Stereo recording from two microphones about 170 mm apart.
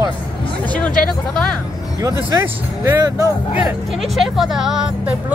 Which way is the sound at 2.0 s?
20° right (ahead or behind).